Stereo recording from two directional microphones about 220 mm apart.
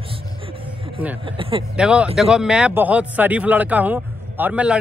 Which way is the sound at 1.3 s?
25° right (ahead or behind).